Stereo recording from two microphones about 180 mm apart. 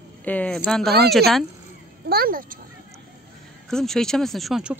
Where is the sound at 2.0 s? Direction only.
55° right (ahead or behind).